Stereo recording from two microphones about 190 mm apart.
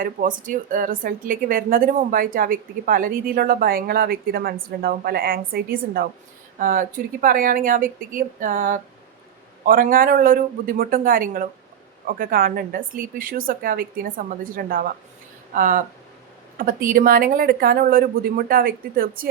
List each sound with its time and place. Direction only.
0.0 s a woman's voice: 45° right (ahead or behind)